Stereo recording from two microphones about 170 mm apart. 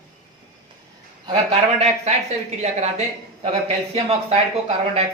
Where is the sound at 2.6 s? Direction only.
40° right (ahead or behind).